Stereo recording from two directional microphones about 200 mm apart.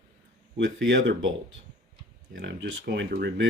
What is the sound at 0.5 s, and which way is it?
Speech, 65° right (ahead or behind).